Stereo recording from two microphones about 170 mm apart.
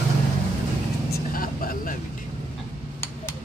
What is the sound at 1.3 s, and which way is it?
Vehicle, 55° left (ahead or behind).